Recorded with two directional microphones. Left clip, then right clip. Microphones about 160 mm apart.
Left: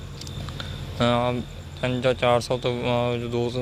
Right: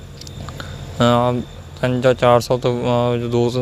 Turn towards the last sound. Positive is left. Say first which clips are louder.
# right 7 dB
turn(degrees=-50)  # may be behind; listen again after turning